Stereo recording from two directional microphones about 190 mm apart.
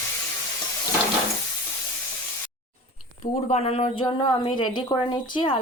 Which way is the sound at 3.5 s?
35° left (ahead or behind).